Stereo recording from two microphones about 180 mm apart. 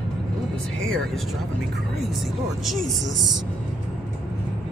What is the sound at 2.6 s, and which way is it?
Speech, centre (ahead or behind).